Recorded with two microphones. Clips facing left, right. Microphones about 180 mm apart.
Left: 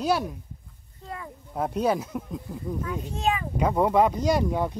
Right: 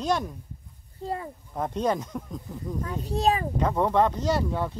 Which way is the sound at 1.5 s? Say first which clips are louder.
Left 2 dB; 10° left (ahead or behind).